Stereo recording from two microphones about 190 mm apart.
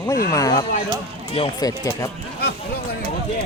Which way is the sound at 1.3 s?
30° left (ahead or behind).